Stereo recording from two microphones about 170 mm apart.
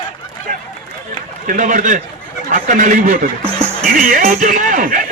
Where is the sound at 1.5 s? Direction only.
50° right (ahead or behind).